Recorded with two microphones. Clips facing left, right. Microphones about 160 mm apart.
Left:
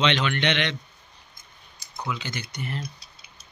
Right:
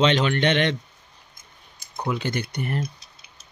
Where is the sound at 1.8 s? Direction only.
50° right (ahead or behind).